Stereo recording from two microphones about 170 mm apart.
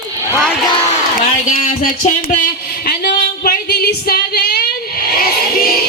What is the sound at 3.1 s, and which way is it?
Female singing, 65° left (ahead or behind).